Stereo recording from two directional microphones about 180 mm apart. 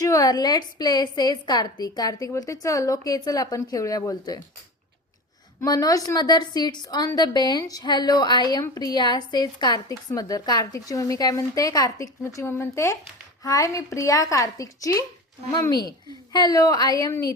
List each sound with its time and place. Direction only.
0.0 s a woman's voice: 20° left (ahead or behind)
5.5 s a woman's voice: 20° left (ahead or behind)